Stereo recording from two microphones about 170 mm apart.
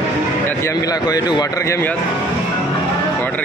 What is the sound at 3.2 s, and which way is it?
Music, 10° left (ahead or behind).